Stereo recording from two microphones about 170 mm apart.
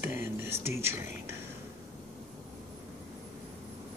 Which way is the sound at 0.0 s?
15° right (ahead or behind).